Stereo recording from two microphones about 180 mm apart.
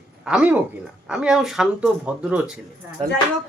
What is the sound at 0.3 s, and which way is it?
Speech, 5° right (ahead or behind).